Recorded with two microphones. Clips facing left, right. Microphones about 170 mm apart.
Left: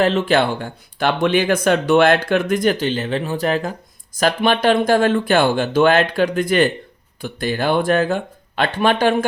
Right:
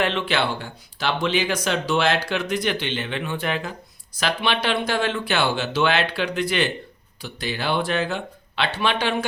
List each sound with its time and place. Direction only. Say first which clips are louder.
0.0 s speech: left 7 dB; 40° left (ahead or behind)